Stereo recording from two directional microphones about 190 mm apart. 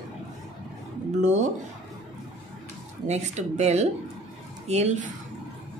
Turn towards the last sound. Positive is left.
turn(degrees=-35)  # may be behind; listen again after turning